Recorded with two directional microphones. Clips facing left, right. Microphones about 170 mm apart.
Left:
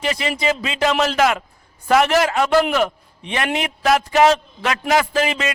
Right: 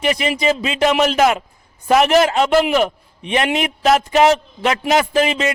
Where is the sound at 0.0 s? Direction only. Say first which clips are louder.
Right 3 dB; 20° right (ahead or behind).